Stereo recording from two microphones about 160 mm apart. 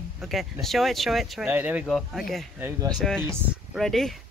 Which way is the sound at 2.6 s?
20° right (ahead or behind).